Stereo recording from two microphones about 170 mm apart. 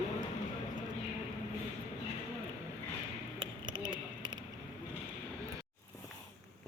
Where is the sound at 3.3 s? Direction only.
30° right (ahead or behind).